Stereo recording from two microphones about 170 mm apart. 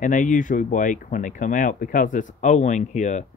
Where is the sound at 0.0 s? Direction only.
50° left (ahead or behind).